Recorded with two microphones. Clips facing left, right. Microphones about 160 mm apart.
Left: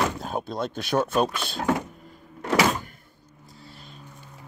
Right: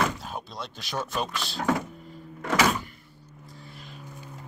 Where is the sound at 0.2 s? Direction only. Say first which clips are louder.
Left 8 dB; 50° left (ahead or behind).